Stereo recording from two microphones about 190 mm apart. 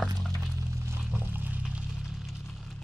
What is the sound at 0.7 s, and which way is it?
Music, 15° right (ahead or behind).